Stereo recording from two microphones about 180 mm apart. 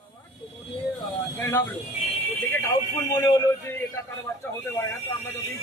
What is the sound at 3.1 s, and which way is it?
Speech, 20° left (ahead or behind).